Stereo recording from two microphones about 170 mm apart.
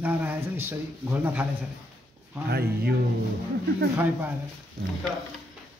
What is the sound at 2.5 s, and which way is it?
Speech, 65° right (ahead or behind).